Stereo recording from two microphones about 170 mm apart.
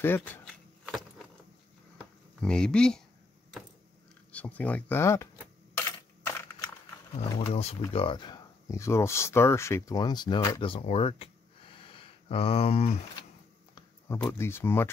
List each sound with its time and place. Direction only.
0.0 s speech: 15° left (ahead or behind)
2.4 s speech: 5° left (ahead or behind)
4.3 s speech: 10° left (ahead or behind)
5.8 s coin: 15° left (ahead or behind)
7.4 s speech: 40° left (ahead or behind)
11.7 s a sound: 30° left (ahead or behind)
14.0 s speech: 15° left (ahead or behind)